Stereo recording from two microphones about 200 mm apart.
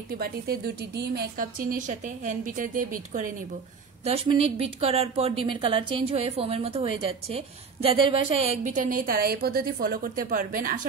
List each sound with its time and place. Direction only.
0.1 s a woman's voice: 50° right (ahead or behind)
4.0 s a woman's voice: 30° right (ahead or behind); by 10.9 s 45° right (ahead or behind)